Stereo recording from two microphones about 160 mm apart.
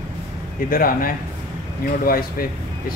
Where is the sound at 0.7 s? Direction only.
65° left (ahead or behind).